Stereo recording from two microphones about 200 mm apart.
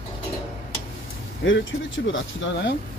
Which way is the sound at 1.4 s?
55° left (ahead or behind).